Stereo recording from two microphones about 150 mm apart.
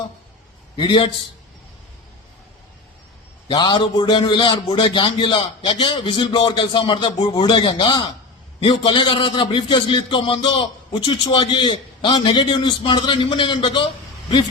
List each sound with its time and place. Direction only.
0.8 s a man's voice: 35° left (ahead or behind)
3.5 s a man's voice: 30° left (ahead or behind)